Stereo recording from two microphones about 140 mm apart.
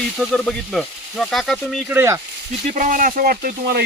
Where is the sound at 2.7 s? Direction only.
70° right (ahead or behind); by 3.8 s 90° right.